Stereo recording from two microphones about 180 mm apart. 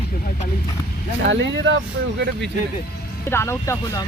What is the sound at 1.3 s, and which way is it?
Speech, 90° right.